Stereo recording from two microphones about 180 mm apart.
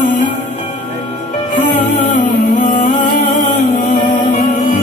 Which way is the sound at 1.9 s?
40° left (ahead or behind).